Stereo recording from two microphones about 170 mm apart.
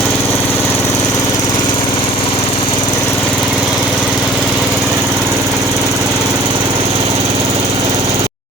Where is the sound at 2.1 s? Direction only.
30° left (ahead or behind).